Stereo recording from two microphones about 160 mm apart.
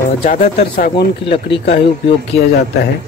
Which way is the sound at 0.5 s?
80° left.